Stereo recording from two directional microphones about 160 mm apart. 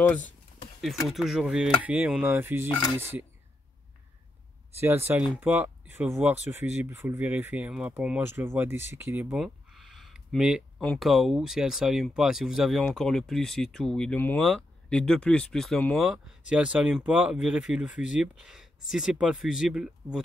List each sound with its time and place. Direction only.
1.0 s speech: centre (ahead or behind)
4.7 s speech: 15° right (ahead or behind)
8.8 s a sound: 15° right (ahead or behind)
10.8 s speech: 5° left (ahead or behind)